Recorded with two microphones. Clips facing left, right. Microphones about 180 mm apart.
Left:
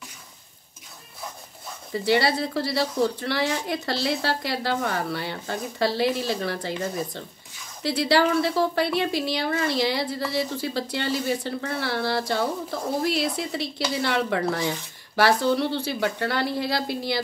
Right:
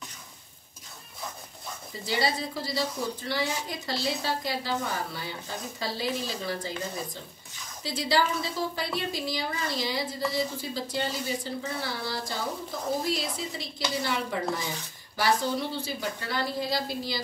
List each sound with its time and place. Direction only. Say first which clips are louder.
2.0 s a woman's voice: left 7 dB; 70° left (ahead or behind)
7.8 s a woman's voice: left 6 dB; 70° left (ahead or behind)